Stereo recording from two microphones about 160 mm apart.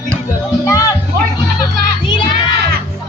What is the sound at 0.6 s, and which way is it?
Music, 20° left (ahead or behind).